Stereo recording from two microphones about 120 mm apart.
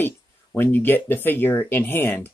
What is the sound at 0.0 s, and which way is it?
Speech, 15° left (ahead or behind).